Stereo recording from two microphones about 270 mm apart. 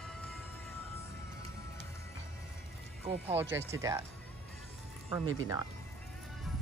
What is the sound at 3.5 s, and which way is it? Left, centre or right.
Speech, centre.